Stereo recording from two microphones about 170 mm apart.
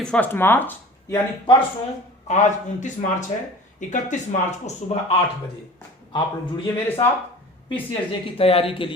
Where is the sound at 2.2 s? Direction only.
45° left (ahead or behind).